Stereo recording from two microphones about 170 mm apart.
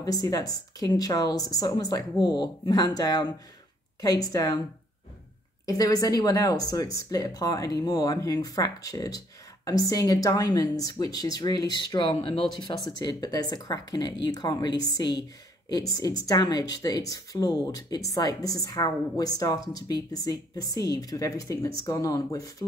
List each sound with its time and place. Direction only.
0.0 s speech: 20° left (ahead or behind)
5.7 s speech: 20° left (ahead or behind)